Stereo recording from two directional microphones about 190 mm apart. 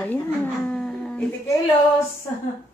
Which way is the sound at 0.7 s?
5° left (ahead or behind).